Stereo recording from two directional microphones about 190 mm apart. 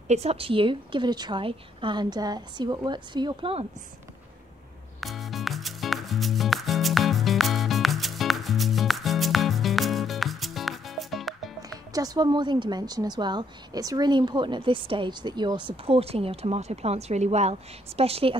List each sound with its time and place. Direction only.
0.1 s a woman's voice: 35° right (ahead or behind)
5.0 s music: centre (ahead or behind)
11.9 s a woman's voice: 20° right (ahead or behind)